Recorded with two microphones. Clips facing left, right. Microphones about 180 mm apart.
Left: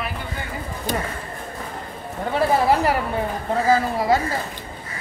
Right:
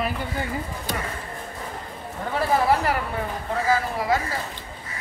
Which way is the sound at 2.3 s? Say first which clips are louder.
Left 3 dB; 15° left (ahead or behind).